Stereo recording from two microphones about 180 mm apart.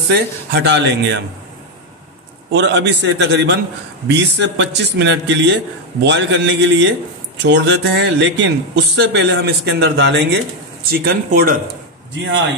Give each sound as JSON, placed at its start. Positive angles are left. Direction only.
{"t": 0.1, "sound": "speech", "side_deg": -65}
{"t": 2.5, "sound": "speech", "side_deg": -75}
{"t": 7.4, "sound": "speech", "side_deg": -75}
{"t": 10.9, "sound": "speech", "side_deg": -55}